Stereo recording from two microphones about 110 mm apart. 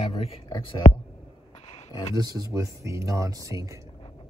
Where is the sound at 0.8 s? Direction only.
90° left.